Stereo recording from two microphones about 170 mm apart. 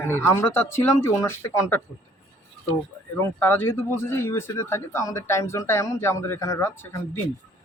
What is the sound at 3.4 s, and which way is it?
Speech, 10° left (ahead or behind).